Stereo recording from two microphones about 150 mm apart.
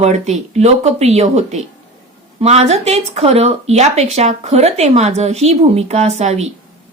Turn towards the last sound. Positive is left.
turn(degrees=-45)  # may be behind; listen again after turning